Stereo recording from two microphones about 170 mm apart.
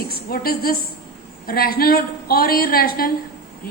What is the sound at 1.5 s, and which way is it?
A woman's voice, 60° left (ahead or behind).